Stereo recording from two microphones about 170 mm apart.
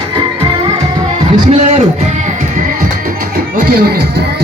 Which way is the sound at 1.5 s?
40° right (ahead or behind).